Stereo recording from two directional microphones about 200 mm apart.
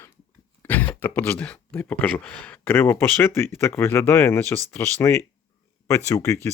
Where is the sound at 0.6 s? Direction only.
10° left (ahead or behind).